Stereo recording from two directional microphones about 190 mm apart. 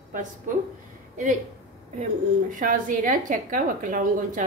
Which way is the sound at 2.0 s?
45° right (ahead or behind).